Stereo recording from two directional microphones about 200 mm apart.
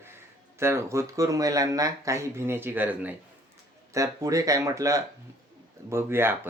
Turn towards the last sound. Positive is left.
turn(degrees=-10)  # may be behind; listen again after turning